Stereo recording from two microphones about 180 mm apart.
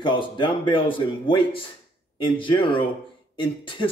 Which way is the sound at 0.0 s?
25° left (ahead or behind).